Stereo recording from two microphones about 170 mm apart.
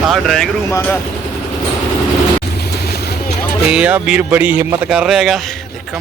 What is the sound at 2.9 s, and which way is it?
Vehicle, 70° left (ahead or behind).